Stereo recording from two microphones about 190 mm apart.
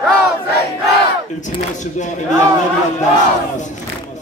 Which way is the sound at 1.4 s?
40° left (ahead or behind).